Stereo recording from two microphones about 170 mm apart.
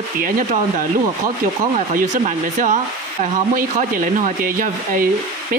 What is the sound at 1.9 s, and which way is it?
Speech, 45° right (ahead or behind).